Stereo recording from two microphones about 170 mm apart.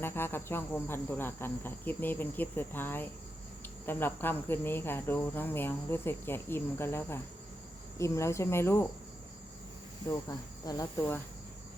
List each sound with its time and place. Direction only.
0.0 s cricket: 15° left (ahead or behind)
10.1 s cricket: 20° left (ahead or behind)